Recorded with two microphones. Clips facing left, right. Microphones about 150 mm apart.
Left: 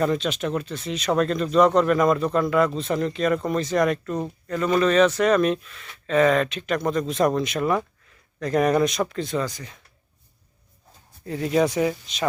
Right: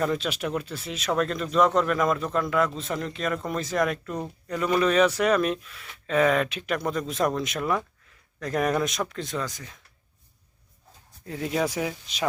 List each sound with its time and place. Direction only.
0.0 s speech: 5° right (ahead or behind)
11.3 s speech: centre (ahead or behind)